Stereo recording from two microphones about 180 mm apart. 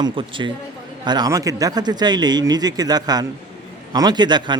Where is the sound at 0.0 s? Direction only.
25° right (ahead or behind).